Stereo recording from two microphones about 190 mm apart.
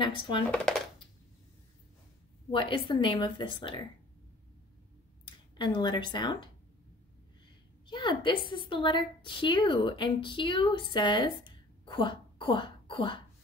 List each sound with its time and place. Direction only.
0.0 s speech: 25° left (ahead or behind)
2.5 s speech: 25° left (ahead or behind)
5.6 s speech: 25° left (ahead or behind)
7.8 s a woman's voice: 25° left (ahead or behind)